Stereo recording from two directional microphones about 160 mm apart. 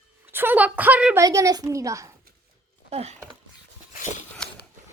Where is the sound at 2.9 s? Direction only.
40° right (ahead or behind).